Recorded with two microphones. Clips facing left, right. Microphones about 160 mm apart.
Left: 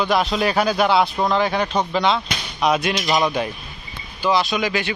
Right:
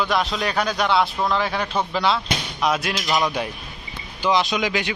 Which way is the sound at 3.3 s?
5° right (ahead or behind).